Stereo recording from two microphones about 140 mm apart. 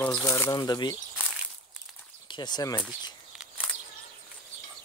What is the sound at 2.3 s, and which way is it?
Speech, 30° left (ahead or behind).